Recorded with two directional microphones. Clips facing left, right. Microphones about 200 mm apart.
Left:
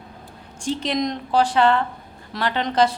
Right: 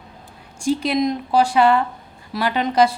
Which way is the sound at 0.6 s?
10° right (ahead or behind).